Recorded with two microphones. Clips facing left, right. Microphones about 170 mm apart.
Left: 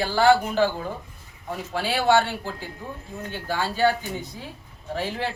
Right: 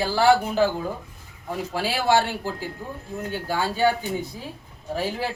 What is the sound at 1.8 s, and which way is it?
Speech, 40° right (ahead or behind).